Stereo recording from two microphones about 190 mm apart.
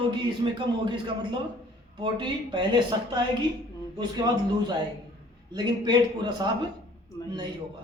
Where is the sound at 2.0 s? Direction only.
25° right (ahead or behind).